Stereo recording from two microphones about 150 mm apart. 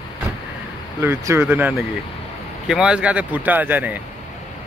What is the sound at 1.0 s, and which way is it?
Speech, 15° right (ahead or behind).